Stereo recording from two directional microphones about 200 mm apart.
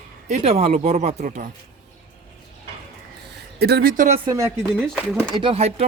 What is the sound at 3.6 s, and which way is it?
Speech, 50° right (ahead or behind).